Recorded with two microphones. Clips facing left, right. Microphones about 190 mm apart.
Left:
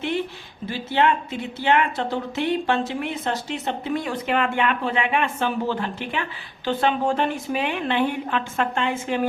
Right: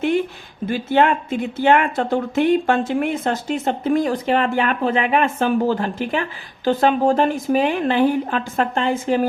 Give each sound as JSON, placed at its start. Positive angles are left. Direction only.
{"t": 0.7, "sound": "a woman's voice", "side_deg": -50}